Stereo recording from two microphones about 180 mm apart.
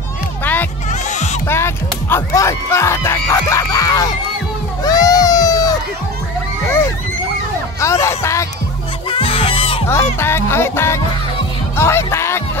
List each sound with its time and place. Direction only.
1.5 s speech: 15° left (ahead or behind)
4.8 s baby cry: 20° left (ahead or behind)
7.8 s music: 15° left (ahead or behind)
9.1 s fowl: 30° left (ahead or behind)
9.8 s music: 15° left (ahead or behind)